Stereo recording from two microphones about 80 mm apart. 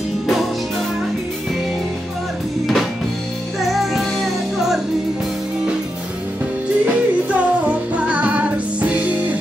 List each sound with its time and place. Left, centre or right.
2.6 s music: centre
7.2 s music: centre